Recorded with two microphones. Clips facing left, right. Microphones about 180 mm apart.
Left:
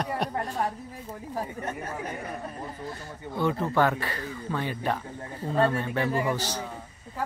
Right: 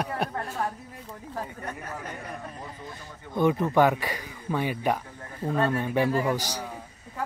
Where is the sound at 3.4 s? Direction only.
15° right (ahead or behind).